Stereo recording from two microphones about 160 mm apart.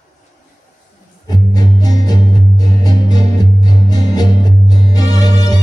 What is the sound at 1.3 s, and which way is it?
Music, 25° left (ahead or behind).